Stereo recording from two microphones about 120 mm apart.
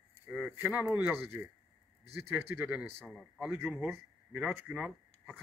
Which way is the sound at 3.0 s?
Centre (ahead or behind).